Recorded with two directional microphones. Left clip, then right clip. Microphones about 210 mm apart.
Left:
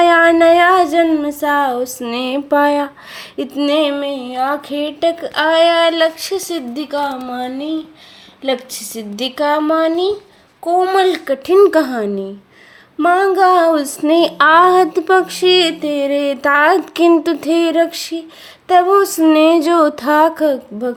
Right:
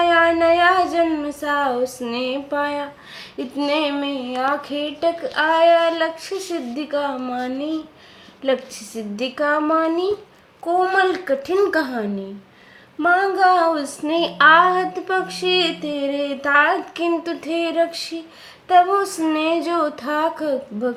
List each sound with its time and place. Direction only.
0.0 s female singing: 45° left (ahead or behind); by 7.7 s 20° left (ahead or behind)
8.4 s a woman's voice: 20° left (ahead or behind)
10.7 s female singing: 35° left (ahead or behind)
11.7 s a woman's voice: 50° left (ahead or behind)